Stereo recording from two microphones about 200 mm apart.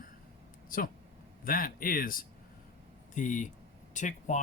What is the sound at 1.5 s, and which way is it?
Speech, 45° left (ahead or behind).